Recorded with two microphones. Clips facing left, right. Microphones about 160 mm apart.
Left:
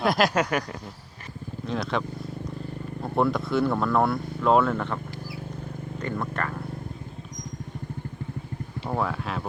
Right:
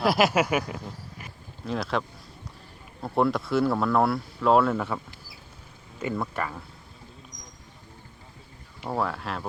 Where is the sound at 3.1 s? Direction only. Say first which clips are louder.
Even; centre (ahead or behind).